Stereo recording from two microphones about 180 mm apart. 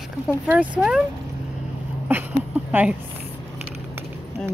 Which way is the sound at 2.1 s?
10° right (ahead or behind).